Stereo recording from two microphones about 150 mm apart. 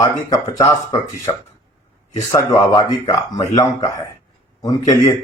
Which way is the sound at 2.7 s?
30° left (ahead or behind).